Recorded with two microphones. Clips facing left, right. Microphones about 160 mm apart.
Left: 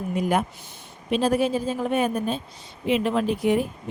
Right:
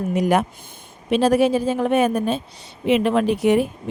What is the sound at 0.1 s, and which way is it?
Speech, 80° right.